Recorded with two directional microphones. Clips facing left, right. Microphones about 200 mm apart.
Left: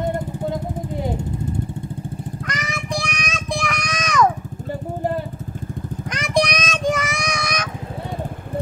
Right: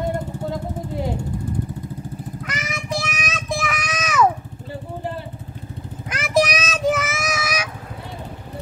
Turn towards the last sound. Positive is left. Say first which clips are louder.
# even
turn(degrees=-5)  # may be behind; listen again after turning